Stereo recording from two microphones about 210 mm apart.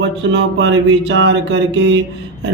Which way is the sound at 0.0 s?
60° right (ahead or behind).